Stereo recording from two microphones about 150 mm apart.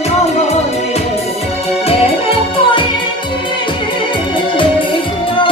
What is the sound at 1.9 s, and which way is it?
Music, 40° left (ahead or behind).